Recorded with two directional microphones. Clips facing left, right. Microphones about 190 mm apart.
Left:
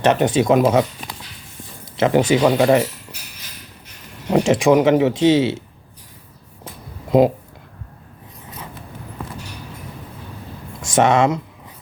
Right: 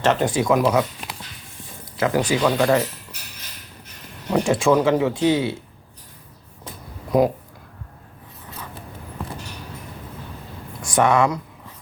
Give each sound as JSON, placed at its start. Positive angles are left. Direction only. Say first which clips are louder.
{"t": 0.0, "sound": "speech", "louder": "left 4 dB", "side_deg": 20}
{"t": 2.0, "sound": "speech", "louder": "left 5 dB", "side_deg": 25}
{"t": 4.4, "sound": "speech", "louder": "left 3 dB", "side_deg": 20}
{"t": 7.1, "sound": "speech", "louder": "left 4 dB", "side_deg": 25}
{"t": 9.2, "sound": "a sound", "louder": "even", "side_deg": 0}
{"t": 10.8, "sound": "speech", "louder": "left 3 dB", "side_deg": 25}